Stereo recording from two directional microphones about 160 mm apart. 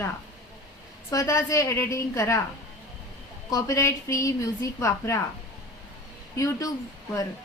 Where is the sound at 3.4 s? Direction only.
20° left (ahead or behind).